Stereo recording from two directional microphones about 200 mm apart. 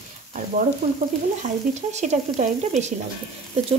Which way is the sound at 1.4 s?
35° right (ahead or behind).